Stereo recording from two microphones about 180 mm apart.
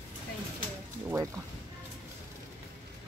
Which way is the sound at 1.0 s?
15° right (ahead or behind).